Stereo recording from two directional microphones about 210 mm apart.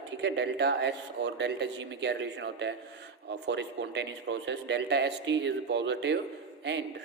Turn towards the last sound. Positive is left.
turn(degrees=-55)  # may be behind; listen again after turning